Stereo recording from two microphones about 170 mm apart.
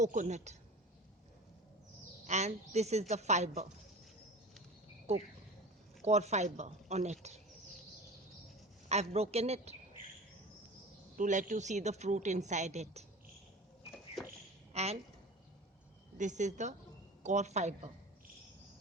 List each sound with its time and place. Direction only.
0.0 s speech: 45° right (ahead or behind)
2.2 s a woman's voice: 40° right (ahead or behind)
5.1 s a woman's voice: 40° right (ahead or behind)
8.9 s a woman's voice: 40° right (ahead or behind)
11.2 s speech: 45° right (ahead or behind)
14.7 s a sound: 40° right (ahead or behind)
16.1 s speech: 45° right (ahead or behind)